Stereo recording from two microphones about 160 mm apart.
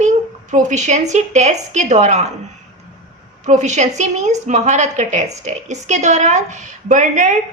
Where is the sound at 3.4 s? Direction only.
45° right (ahead or behind).